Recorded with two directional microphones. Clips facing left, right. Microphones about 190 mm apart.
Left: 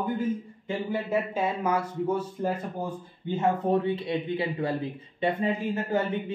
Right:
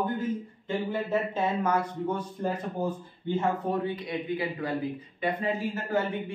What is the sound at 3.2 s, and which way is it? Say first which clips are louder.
A man's voice: left 2 dB; 25° left (ahead or behind).